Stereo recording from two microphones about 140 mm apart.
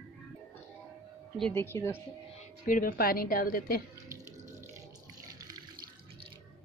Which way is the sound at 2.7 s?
85° left.